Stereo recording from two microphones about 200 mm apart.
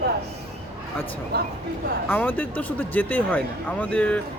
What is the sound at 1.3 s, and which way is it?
Speech, 50° right (ahead or behind).